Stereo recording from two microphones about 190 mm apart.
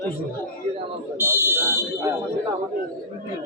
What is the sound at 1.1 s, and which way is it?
Speech, 15° right (ahead or behind).